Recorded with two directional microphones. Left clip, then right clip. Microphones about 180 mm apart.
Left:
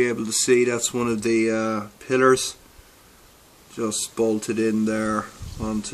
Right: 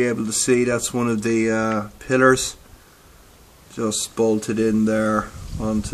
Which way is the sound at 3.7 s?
5° right (ahead or behind).